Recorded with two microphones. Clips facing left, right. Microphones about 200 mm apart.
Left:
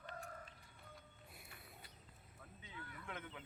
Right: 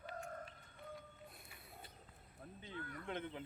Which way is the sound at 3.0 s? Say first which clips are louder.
Right 6 dB; 30° right (ahead or behind).